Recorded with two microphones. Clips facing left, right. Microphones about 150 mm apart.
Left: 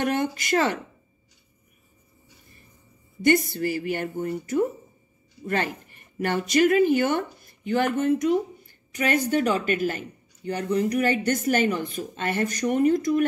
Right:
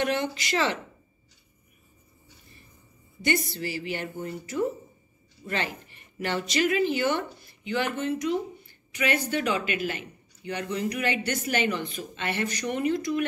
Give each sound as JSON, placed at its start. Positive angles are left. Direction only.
{"t": 0.0, "sound": "speech", "side_deg": 50}
{"t": 3.2, "sound": "speech", "side_deg": 50}